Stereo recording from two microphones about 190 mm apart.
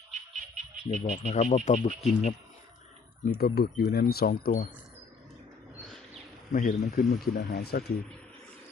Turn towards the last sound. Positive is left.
turn(degrees=55)  # may be behind; listen again after turning